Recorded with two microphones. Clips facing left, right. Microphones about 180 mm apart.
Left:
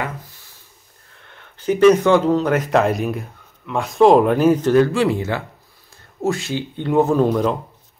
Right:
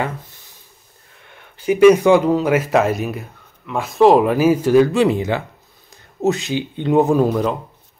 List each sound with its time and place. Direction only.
1.2 s speech: 10° right (ahead or behind)
7.2 s speech: centre (ahead or behind)